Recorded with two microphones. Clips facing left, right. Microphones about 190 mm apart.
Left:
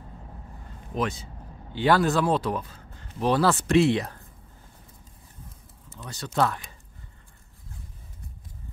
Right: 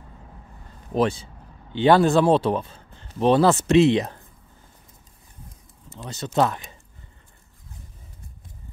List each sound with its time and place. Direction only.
0.9 s speech: 30° right (ahead or behind)
5.9 s speech: 25° right (ahead or behind)